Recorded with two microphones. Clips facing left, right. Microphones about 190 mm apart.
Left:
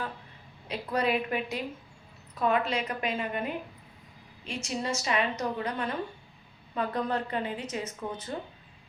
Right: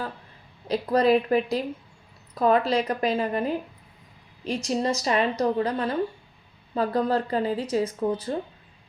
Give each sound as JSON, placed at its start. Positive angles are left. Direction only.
{"t": 0.7, "sound": "speech", "side_deg": -35}